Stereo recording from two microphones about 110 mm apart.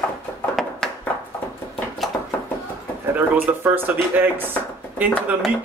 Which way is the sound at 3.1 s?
15° right (ahead or behind).